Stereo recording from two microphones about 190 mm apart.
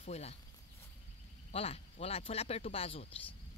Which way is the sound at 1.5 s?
30° left (ahead or behind).